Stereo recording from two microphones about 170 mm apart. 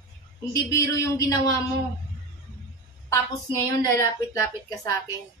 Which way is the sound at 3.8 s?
20° left (ahead or behind).